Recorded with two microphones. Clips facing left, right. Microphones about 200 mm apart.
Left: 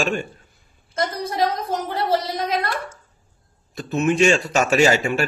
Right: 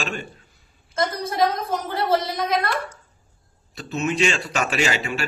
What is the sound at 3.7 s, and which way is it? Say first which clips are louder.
A man's voice: left 5 dB; 50° left (ahead or behind).